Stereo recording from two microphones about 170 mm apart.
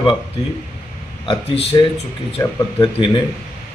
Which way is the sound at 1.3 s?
30° left (ahead or behind).